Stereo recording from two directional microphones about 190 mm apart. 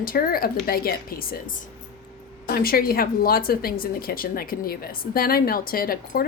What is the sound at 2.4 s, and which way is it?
A woman's voice, 50° left (ahead or behind).